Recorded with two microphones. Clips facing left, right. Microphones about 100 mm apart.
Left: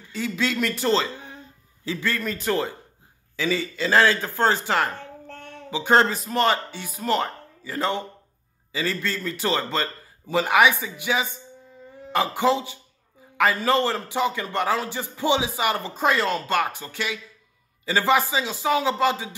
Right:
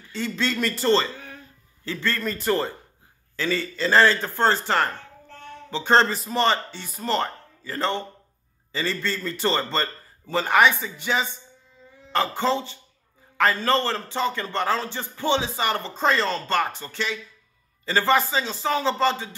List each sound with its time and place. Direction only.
0.1 s a man's voice: 5° left (ahead or behind)
1.1 s a sound: 20° left (ahead or behind)
1.9 s a man's voice: 5° left (ahead or behind)
5.2 s child singing: 55° left (ahead or behind)
5.7 s a man's voice: 10° left (ahead or behind)